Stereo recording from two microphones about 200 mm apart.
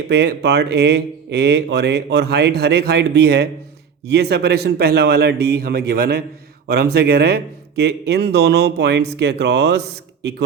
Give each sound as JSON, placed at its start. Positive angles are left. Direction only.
{"t": 0.1, "sound": "a man's voice", "side_deg": -55}